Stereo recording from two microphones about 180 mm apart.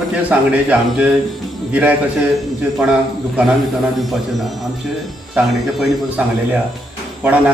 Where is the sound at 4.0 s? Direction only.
Centre (ahead or behind).